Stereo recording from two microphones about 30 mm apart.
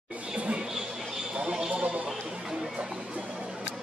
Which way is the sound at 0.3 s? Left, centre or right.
Right.